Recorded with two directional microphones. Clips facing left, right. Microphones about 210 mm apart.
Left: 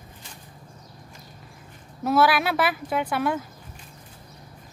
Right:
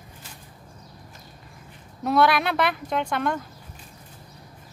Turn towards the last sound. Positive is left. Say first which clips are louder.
# left 1 dB
turn(degrees=5)  # may be behind; listen again after turning